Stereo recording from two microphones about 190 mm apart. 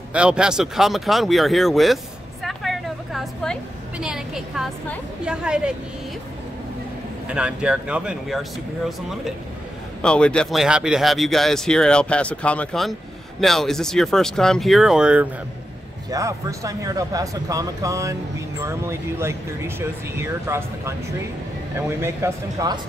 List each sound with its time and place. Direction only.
0.1 s speech: 5° right (ahead or behind)
2.4 s a sound: centre (ahead or behind)
4.0 s speech: 5° right (ahead or behind)
7.2 s speech: 5° right (ahead or behind)
10.0 s speech: 5° left (ahead or behind)
16.1 s speech: 15° right (ahead or behind)